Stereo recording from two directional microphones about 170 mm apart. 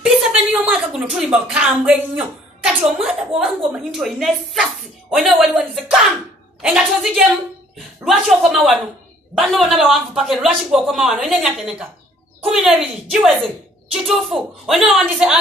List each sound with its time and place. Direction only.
0.0 s a woman's voice: centre (ahead or behind)